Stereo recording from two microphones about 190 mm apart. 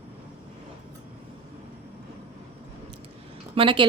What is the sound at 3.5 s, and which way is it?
Speech, 25° right (ahead or behind).